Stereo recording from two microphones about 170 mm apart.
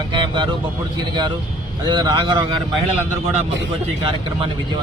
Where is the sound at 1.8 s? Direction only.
25° right (ahead or behind).